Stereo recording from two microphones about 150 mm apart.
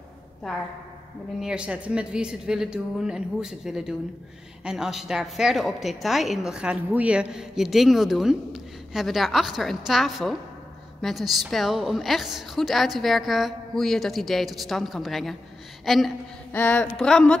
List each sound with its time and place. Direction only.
1.4 s a woman's voice: 5° right (ahead or behind)
16.5 s speech: 10° left (ahead or behind)